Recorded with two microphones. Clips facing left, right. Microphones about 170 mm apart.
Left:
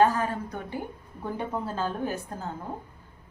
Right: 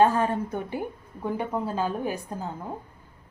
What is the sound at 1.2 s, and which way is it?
Speech, 10° right (ahead or behind).